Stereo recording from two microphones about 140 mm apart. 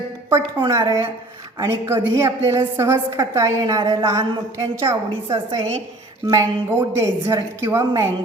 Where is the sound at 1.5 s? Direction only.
20° right (ahead or behind).